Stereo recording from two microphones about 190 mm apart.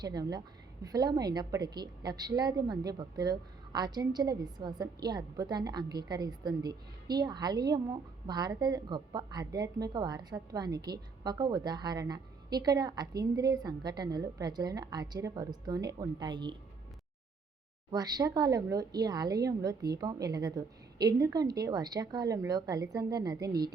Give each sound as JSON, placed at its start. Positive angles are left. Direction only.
{"t": 0.0, "sound": "a woman's voice", "side_deg": -20}
{"t": 17.9, "sound": "a woman's voice", "side_deg": -20}